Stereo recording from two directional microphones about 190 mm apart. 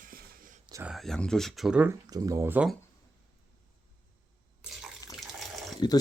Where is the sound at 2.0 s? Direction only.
20° right (ahead or behind).